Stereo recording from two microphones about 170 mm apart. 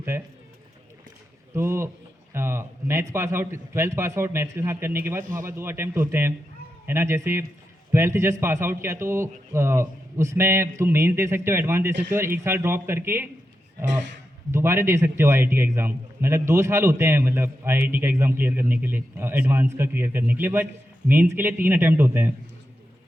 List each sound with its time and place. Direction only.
0.1 s a man's voice: 15° right (ahead or behind)
1.5 s a man's voice: 15° right (ahead or behind)
14.5 s a man's voice: 15° right (ahead or behind)